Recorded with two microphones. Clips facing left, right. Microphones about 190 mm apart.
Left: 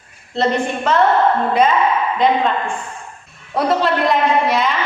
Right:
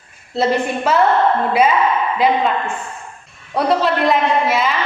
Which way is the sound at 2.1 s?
5° right (ahead or behind).